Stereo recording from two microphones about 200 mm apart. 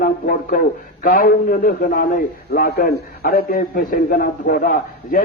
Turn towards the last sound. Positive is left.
turn(degrees=45)  # may be behind; listen again after turning